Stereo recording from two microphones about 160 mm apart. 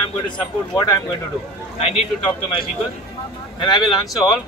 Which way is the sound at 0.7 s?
25° left (ahead or behind).